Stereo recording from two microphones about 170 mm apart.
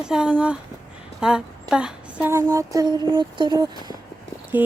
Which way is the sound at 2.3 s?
20° right (ahead or behind).